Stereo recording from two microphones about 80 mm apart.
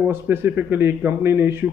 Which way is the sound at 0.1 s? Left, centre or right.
Right.